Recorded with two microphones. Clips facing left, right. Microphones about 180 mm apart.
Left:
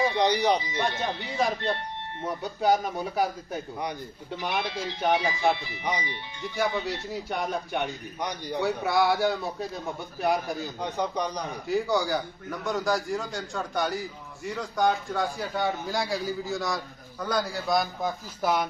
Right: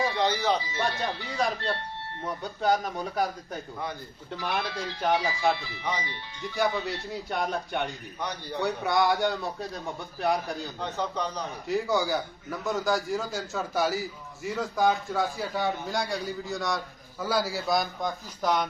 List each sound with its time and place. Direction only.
0.0 s a man's voice: 20° left (ahead or behind)
7.1 s a man's voice: centre (ahead or behind)
8.2 s a man's voice: 15° left (ahead or behind)
8.6 s a man's voice: centre (ahead or behind)
10.8 s a man's voice: 15° left (ahead or behind)
11.7 s a man's voice: centre (ahead or behind)